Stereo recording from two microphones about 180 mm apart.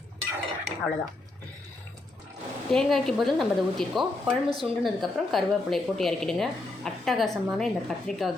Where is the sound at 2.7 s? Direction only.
Centre (ahead or behind).